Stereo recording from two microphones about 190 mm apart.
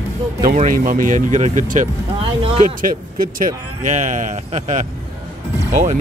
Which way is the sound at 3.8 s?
40° right (ahead or behind).